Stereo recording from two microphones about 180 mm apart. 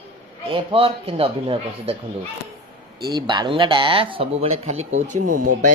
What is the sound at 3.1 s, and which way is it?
Speech, 25° right (ahead or behind).